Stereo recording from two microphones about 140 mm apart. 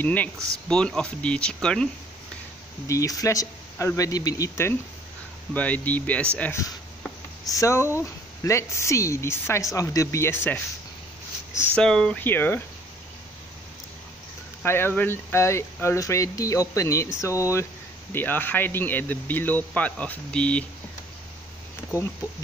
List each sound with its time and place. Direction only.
0.0 s speech: 10° left (ahead or behind)
2.9 s speech: 25° left (ahead or behind)
11.7 s speech: 5° left (ahead or behind)
14.6 s speech: 15° left (ahead or behind)